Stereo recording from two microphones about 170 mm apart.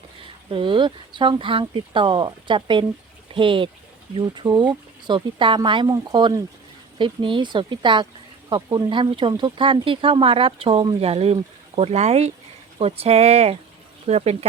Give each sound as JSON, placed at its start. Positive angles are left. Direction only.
{"t": 0.5, "sound": "speech", "side_deg": -30}